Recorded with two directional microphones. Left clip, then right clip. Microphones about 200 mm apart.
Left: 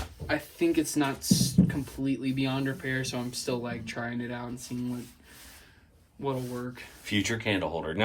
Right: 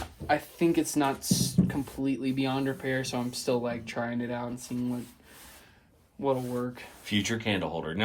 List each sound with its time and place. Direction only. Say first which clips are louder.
0.3 s speech: right 2 dB; 35° right (ahead or behind)
6.2 s speech: right 4 dB; 30° right (ahead or behind)
7.0 s speech: left 1 dB; 10° right (ahead or behind)